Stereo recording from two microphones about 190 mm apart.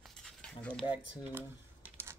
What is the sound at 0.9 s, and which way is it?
Speech, 10° right (ahead or behind).